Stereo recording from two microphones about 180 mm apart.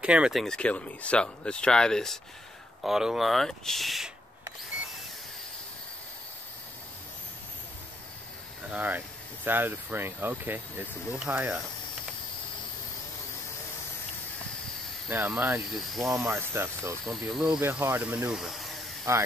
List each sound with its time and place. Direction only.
0.0 s speech: 5° right (ahead or behind)
8.6 s speech: 10° right (ahead or behind)
15.0 s speech: 10° right (ahead or behind)
17.0 s speech: centre (ahead or behind)
19.1 s speech: 15° right (ahead or behind)